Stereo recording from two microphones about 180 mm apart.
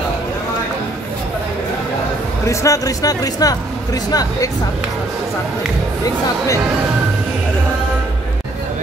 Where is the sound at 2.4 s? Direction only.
15° left (ahead or behind).